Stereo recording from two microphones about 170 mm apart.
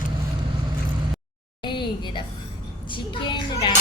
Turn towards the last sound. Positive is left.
turn(degrees=25)  # may be behind; listen again after turning